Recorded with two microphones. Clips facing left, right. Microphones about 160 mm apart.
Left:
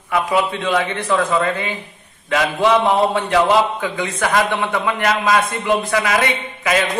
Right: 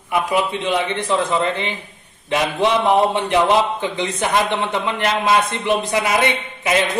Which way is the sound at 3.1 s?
25° right (ahead or behind).